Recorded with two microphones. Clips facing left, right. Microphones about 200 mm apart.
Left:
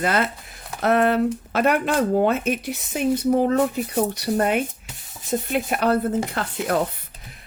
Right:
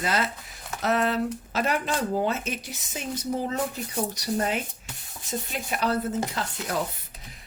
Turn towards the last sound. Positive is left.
turn(degrees=60)  # may be behind; listen again after turning